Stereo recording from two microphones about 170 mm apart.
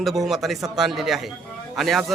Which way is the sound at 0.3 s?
Centre (ahead or behind).